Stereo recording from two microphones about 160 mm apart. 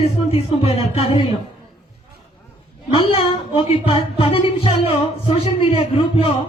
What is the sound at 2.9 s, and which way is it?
Speech, 35° left (ahead or behind).